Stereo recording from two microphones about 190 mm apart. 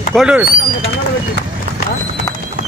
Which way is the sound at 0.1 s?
5° right (ahead or behind).